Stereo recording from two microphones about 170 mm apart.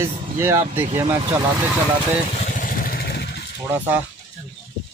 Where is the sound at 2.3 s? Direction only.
50° left (ahead or behind); by 3.4 s 80° left.